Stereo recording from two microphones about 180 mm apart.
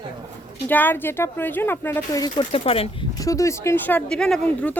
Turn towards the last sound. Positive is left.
turn(degrees=5)  # may be behind; listen again after turning